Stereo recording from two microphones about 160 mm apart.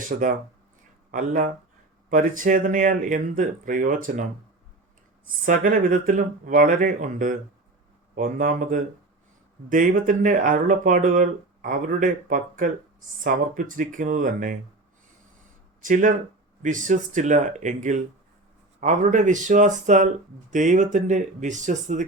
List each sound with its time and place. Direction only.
0.0 s speech: 55° right (ahead or behind)
5.5 s speech: 55° right (ahead or behind)
15.8 s speech: 55° right (ahead or behind)